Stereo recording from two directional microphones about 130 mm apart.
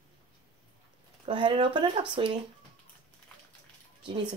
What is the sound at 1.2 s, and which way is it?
Speech, 40° right (ahead or behind).